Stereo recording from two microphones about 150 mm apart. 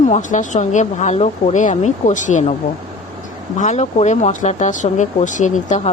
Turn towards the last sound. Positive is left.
turn(degrees=50)  # may be behind; listen again after turning